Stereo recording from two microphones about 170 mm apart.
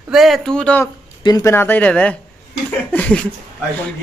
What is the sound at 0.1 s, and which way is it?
Speech, centre (ahead or behind).